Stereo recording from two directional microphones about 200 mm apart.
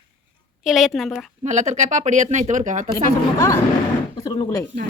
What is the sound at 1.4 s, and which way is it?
Speech, 35° right (ahead or behind).